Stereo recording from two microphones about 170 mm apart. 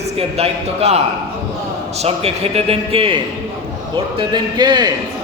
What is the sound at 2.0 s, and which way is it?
A man's voice, 40° right (ahead or behind).